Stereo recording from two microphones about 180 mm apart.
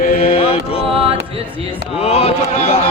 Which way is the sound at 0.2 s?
30° left (ahead or behind).